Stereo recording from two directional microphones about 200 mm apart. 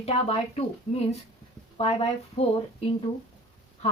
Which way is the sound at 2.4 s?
30° left (ahead or behind).